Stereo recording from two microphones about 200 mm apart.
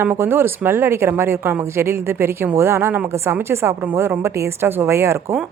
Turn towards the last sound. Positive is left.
turn(degrees=-10)  # may be behind; listen again after turning